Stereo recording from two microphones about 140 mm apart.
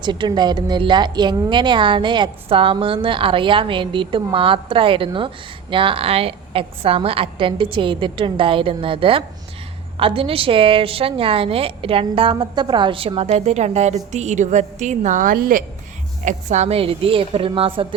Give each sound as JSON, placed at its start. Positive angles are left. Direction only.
{"t": 0.0, "sound": "a woman's voice", "side_deg": -35}
{"t": 16.2, "sound": "a woman's voice", "side_deg": -55}